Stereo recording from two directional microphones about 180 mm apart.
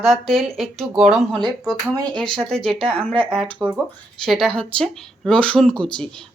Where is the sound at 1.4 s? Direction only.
20° right (ahead or behind).